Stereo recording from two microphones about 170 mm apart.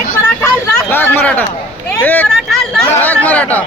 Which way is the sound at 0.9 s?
10° left (ahead or behind).